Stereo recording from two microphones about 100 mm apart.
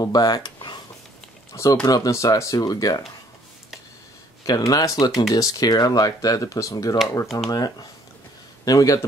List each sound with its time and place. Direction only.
0.0 s speech: 40° left (ahead or behind)
1.5 s speech: 35° left (ahead or behind)
4.5 s speech: 35° left (ahead or behind)
8.6 s speech: 35° left (ahead or behind)